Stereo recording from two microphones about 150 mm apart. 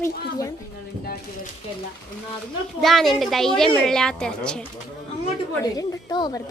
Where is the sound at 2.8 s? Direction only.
Centre (ahead or behind).